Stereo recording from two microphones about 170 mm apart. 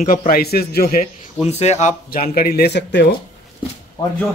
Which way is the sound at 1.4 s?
40° left (ahead or behind).